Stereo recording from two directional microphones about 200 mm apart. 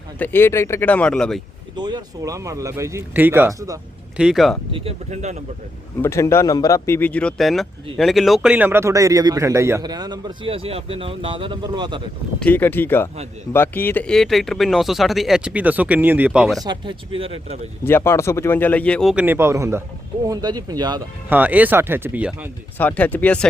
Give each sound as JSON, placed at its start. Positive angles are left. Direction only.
{"t": 0.2, "sound": "speech", "side_deg": 10}
{"t": 1.7, "sound": "speech", "side_deg": -20}
{"t": 4.2, "sound": "speech", "side_deg": 0}
{"t": 4.7, "sound": "speech", "side_deg": -30}
{"t": 6.0, "sound": "speech", "side_deg": 15}
{"t": 12.4, "sound": "speech", "side_deg": 10}
{"t": 16.6, "sound": "speech", "side_deg": -25}
{"t": 17.8, "sound": "speech", "side_deg": 10}
{"t": 21.2, "sound": "speech", "side_deg": -10}
{"t": 22.8, "sound": "speech", "side_deg": 10}